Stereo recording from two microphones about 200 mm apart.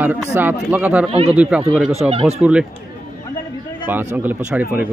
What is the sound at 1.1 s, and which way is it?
Speech, 30° right (ahead or behind).